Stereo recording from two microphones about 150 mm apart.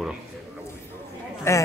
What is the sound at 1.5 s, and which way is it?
Speech, 20° left (ahead or behind).